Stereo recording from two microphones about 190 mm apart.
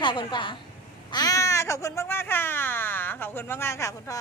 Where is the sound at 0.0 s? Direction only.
25° left (ahead or behind).